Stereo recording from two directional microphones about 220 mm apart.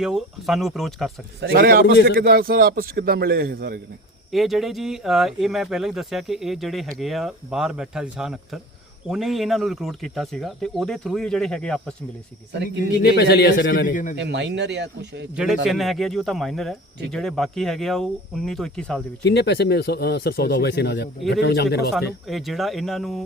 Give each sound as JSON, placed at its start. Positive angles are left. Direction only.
{"t": 0.0, "sound": "speech", "side_deg": 0}
{"t": 1.4, "sound": "a man's voice", "side_deg": -45}
{"t": 4.3, "sound": "speech", "side_deg": 0}
{"t": 13.0, "sound": "speech", "side_deg": 50}
{"t": 14.2, "sound": "a man's voice", "side_deg": -50}
{"t": 15.6, "sound": "speech", "side_deg": 0}
{"t": 19.2, "sound": "speech", "side_deg": 50}
{"t": 22.3, "sound": "speech", "side_deg": 0}